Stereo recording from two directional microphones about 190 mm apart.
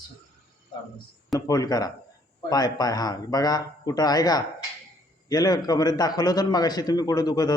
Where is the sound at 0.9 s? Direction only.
20° left (ahead or behind).